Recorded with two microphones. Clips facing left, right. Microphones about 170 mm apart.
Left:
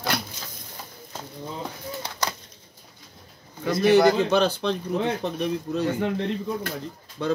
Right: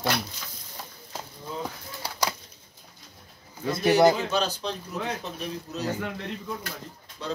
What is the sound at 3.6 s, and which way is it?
Speech, 25° right (ahead or behind).